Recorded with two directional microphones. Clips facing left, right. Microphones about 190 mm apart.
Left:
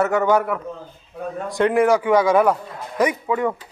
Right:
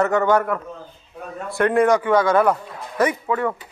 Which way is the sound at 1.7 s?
5° left (ahead or behind).